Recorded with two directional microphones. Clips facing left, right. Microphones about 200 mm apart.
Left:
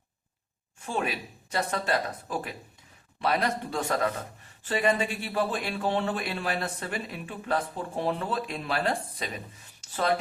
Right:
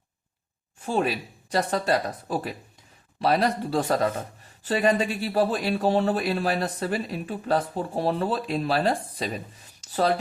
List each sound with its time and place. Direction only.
1.5 s speech: 35° right (ahead or behind)